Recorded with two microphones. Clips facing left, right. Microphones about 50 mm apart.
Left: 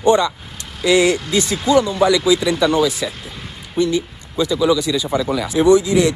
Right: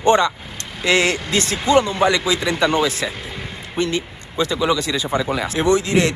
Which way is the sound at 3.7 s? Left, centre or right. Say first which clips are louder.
Left 4 dB; right.